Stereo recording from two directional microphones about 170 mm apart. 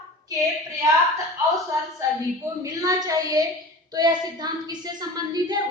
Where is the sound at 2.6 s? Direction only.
20° right (ahead or behind).